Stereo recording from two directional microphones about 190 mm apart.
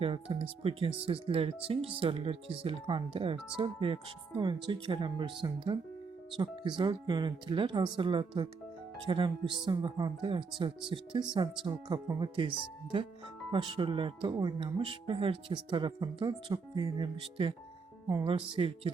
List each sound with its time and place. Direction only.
0.0 s speech: 30° right (ahead or behind)